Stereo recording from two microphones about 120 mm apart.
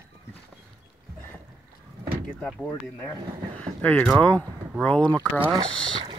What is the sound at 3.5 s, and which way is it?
Speech, 10° left (ahead or behind).